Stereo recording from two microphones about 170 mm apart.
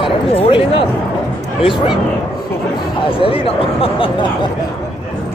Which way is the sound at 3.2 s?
35° left (ahead or behind).